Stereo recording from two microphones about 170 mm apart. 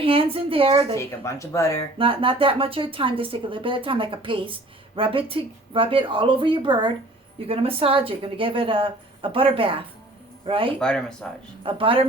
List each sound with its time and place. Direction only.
0.0 s speech: 30° right (ahead or behind)
0.9 s speech: 15° left (ahead or behind)
2.0 s speech: 30° right (ahead or behind)
10.8 s speech: 5° left (ahead or behind)
11.6 s speech: 30° right (ahead or behind)